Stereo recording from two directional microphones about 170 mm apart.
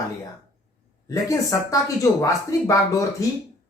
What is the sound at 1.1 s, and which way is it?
Speech, 20° left (ahead or behind).